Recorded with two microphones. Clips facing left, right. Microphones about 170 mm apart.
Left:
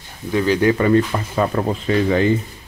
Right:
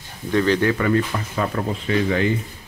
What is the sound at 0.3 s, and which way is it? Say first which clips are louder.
Speech: left 2 dB; 10° left (ahead or behind).